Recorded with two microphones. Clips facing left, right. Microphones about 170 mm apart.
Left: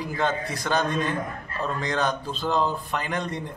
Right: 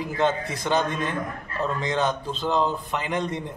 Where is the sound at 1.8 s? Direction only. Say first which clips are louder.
Even; 20° right (ahead or behind).